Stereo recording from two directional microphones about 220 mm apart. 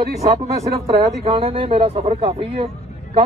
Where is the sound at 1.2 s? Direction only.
25° right (ahead or behind).